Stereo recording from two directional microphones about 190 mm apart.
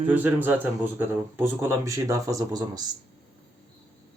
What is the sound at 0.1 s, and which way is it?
A man's voice, 10° right (ahead or behind).